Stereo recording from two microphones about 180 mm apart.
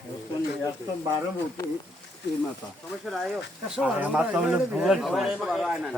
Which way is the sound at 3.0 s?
Centre (ahead or behind).